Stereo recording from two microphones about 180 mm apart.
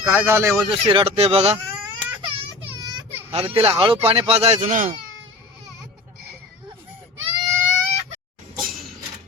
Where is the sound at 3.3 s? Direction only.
35° right (ahead or behind).